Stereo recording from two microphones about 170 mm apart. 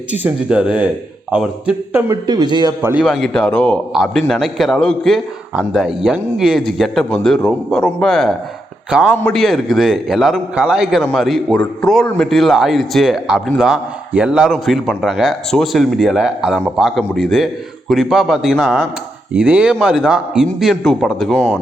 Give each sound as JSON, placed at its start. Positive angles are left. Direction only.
{"t": 0.1, "sound": "a man's voice", "side_deg": -10}
{"t": 2.9, "sound": "a man's voice", "side_deg": 0}